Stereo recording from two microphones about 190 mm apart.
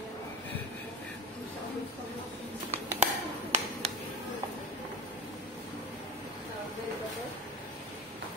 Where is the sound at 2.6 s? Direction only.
40° right (ahead or behind).